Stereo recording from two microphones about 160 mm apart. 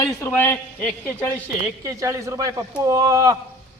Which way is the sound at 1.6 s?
20° right (ahead or behind).